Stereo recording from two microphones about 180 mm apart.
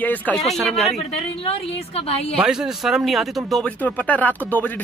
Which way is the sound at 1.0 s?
35° left (ahead or behind).